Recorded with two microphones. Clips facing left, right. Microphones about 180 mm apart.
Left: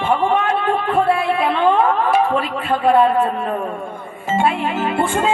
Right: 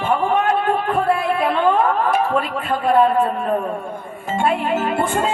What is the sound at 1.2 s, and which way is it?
Speech, 50° right (ahead or behind).